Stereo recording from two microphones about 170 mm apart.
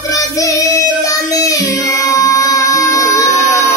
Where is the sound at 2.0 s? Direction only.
20° left (ahead or behind).